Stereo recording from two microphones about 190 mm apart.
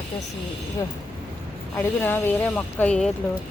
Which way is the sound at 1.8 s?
10° left (ahead or behind).